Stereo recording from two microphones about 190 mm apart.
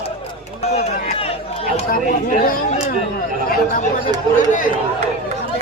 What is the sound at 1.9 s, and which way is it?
Chatter, 50° left (ahead or behind).